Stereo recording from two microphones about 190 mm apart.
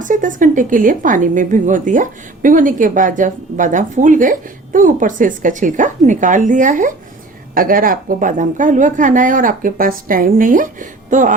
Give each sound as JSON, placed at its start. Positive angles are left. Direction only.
{"t": 0.0, "sound": "speech", "side_deg": -45}